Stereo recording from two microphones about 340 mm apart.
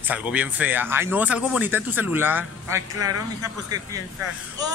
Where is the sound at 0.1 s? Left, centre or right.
Centre.